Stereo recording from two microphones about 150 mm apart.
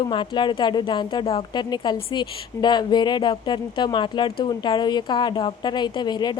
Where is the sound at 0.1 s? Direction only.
30° left (ahead or behind).